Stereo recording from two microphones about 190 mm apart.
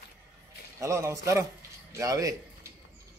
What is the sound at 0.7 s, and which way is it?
A man's voice, 15° right (ahead or behind).